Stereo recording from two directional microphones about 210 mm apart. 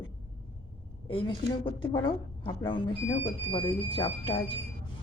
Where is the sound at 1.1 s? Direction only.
25° left (ahead or behind).